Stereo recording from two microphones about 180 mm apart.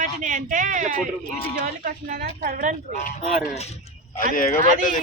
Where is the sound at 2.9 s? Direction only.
40° left (ahead or behind).